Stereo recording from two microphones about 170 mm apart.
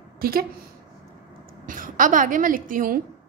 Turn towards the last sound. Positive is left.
turn(degrees=-55)  # may be behind; listen again after turning